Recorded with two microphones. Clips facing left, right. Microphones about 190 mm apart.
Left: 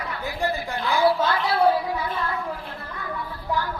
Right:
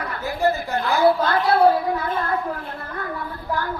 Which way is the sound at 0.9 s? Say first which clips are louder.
Right 2 dB; 50° right (ahead or behind).